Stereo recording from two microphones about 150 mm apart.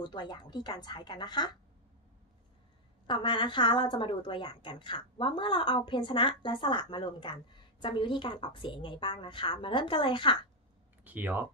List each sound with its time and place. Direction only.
0.0 s speech: 30° left (ahead or behind)
3.1 s a woman's voice: 30° left (ahead or behind)
11.1 s speech: 10° right (ahead or behind)